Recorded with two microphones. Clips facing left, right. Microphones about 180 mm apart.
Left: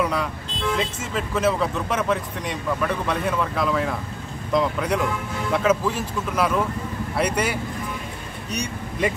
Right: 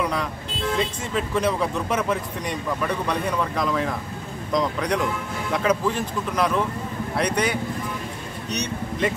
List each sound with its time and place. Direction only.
0.0 s speech: 5° left (ahead or behind)